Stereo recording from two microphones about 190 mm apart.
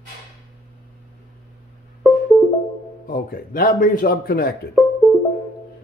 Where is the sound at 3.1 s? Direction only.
50° left (ahead or behind).